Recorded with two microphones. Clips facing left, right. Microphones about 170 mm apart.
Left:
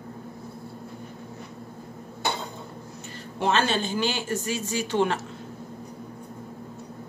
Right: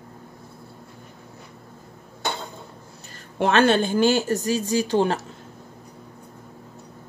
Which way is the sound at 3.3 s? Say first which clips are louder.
Right 6 dB; 60° right (ahead or behind).